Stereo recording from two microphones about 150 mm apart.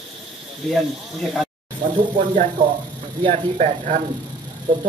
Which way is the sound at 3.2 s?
35° right (ahead or behind).